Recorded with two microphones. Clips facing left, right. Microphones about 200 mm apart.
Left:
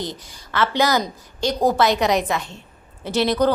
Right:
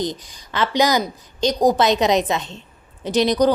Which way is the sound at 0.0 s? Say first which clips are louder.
Right 5 dB; 20° right (ahead or behind).